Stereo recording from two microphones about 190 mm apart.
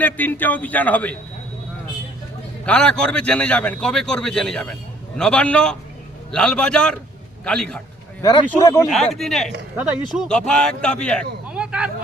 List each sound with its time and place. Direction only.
0.0 s speech: 10° left (ahead or behind)
2.6 s a man's voice: 5° left (ahead or behind)
8.2 s speech: 20° left (ahead or behind)
8.9 s a man's voice: centre (ahead or behind)
11.4 s vehicle: 5° right (ahead or behind)